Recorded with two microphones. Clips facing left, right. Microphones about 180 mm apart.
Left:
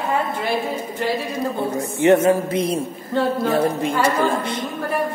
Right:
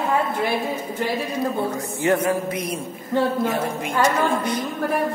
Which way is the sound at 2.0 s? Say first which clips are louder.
Left 6 dB; 25° left (ahead or behind).